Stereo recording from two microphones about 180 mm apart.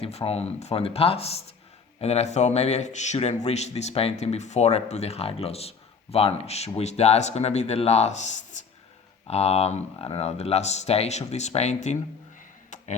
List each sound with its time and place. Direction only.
0.0 s speech: 35° left (ahead or behind)
12.7 s tick: 40° left (ahead or behind)